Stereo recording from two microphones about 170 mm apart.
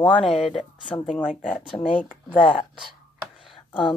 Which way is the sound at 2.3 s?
30° left (ahead or behind).